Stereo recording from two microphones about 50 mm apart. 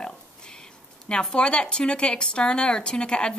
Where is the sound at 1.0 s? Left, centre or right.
Centre.